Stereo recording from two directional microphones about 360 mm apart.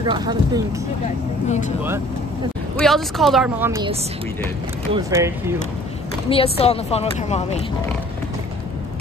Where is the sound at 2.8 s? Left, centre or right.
Centre.